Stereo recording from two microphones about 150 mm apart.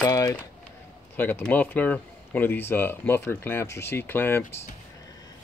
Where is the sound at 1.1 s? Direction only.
10° left (ahead or behind).